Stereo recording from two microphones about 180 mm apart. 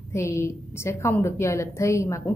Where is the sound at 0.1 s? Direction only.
15° left (ahead or behind).